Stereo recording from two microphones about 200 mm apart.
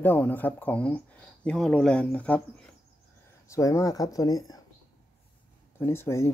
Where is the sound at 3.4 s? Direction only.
15° left (ahead or behind).